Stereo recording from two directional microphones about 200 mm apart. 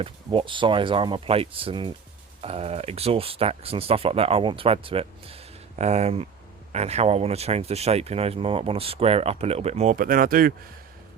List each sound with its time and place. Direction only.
0.0 s speech: 25° right (ahead or behind); by 10.5 s 45° right (ahead or behind)